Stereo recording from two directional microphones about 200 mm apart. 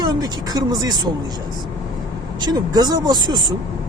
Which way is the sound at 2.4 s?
20° right (ahead or behind).